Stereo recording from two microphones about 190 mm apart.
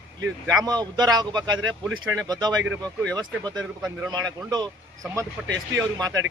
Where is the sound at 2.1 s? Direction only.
20° right (ahead or behind).